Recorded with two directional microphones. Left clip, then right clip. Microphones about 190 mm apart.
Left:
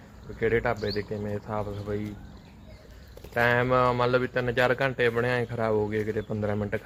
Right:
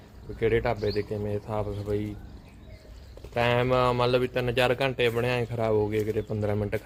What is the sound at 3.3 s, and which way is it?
Speech, 10° right (ahead or behind).